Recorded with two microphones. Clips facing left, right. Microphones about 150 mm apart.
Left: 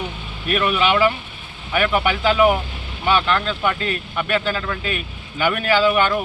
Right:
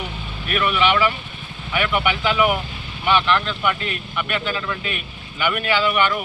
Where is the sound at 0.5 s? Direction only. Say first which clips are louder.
Left 1 dB; 35° left (ahead or behind).